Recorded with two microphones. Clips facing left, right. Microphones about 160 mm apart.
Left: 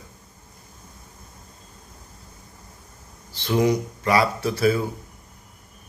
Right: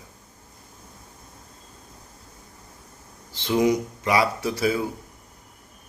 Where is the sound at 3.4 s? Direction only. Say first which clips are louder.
Even; 20° right (ahead or behind).